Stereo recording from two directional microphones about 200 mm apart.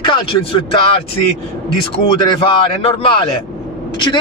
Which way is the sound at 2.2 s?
25° left (ahead or behind).